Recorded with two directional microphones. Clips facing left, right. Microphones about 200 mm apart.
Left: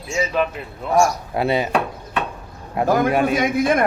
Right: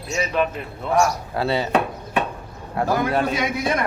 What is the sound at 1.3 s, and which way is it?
Speech, 15° left (ahead or behind).